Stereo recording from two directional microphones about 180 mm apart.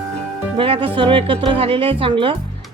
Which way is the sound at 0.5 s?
30° right (ahead or behind).